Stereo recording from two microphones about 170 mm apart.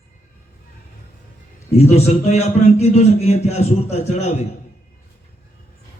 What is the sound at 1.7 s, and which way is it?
A man's voice, 40° left (ahead or behind).